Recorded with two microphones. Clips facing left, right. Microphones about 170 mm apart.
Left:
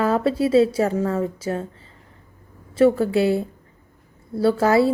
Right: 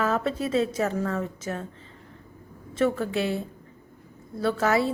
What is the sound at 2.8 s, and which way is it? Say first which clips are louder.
A woman's voice: left 8 dB; 35° left (ahead or behind).